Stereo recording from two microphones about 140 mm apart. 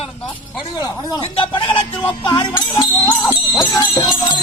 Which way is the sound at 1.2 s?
40° left (ahead or behind).